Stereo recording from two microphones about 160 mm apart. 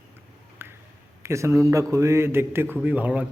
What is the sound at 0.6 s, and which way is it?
Finger snapping, 15° right (ahead or behind).